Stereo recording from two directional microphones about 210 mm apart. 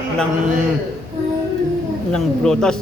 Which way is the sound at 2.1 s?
5° left (ahead or behind).